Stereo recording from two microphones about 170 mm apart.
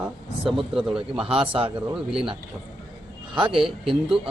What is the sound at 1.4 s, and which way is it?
A man's voice, 30° right (ahead or behind).